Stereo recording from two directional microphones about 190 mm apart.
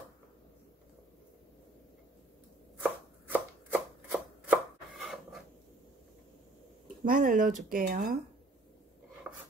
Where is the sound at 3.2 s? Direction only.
10° right (ahead or behind).